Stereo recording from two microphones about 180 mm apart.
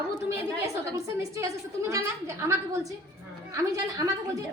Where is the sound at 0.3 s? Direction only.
15° right (ahead or behind).